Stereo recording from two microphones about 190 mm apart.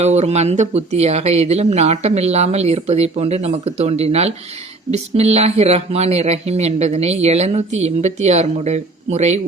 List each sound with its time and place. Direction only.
0.0 s speech: 35° right (ahead or behind)